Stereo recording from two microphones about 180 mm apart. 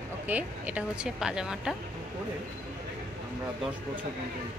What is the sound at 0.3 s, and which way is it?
Speech, 10° right (ahead or behind).